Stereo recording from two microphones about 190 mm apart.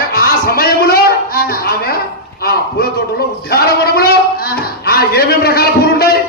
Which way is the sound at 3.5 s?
55° left (ahead or behind).